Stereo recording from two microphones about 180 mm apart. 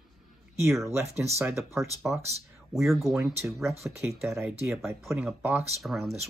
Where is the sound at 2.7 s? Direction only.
Centre (ahead or behind).